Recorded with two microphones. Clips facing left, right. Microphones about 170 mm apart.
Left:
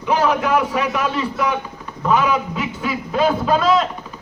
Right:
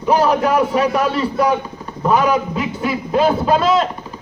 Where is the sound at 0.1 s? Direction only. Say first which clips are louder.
Right 3 dB; 35° right (ahead or behind).